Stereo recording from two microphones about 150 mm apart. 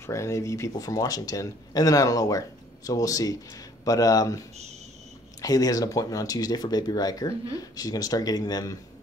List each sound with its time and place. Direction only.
0.0 s speech: 20° left (ahead or behind)
5.4 s speech: 25° left (ahead or behind)